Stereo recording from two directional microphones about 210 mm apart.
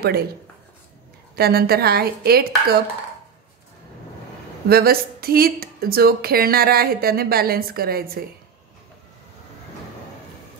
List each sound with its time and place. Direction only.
0.0 s speech: 45° right (ahead or behind)
1.3 s speech: 45° right (ahead or behind)
4.6 s speech: 45° right (ahead or behind)